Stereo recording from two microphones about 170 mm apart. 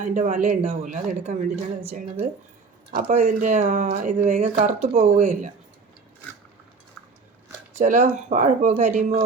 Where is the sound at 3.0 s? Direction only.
45° right (ahead or behind).